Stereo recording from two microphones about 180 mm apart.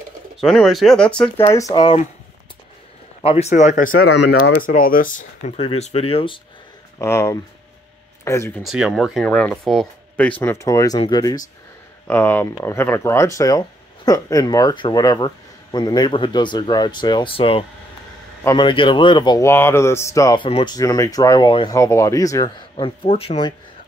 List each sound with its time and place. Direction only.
0.4 s speech: centre (ahead or behind)
1.5 s speech: 20° left (ahead or behind)
3.2 s speech: 35° left (ahead or behind)
4.1 s speech: 65° left (ahead or behind); by 5.5 s 50° left (ahead or behind)
5.6 s speech: 35° left (ahead or behind)
7.0 s speech: 15° left (ahead or behind)
8.6 s speech: 5° right (ahead or behind)
10.4 s speech: 15° left (ahead or behind)
12.1 s speech: 10° left (ahead or behind); by 23.5 s 35° left (ahead or behind)